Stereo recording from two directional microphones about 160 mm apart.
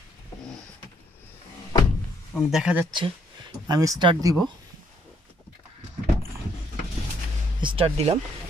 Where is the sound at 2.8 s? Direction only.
30° right (ahead or behind).